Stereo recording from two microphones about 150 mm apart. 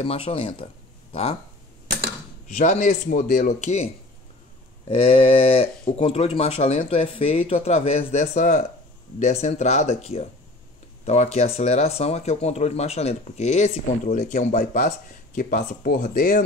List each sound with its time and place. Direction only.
0.0 s speech: 35° left (ahead or behind)
2.4 s speech: 55° left (ahead or behind); by 16.4 s 80° left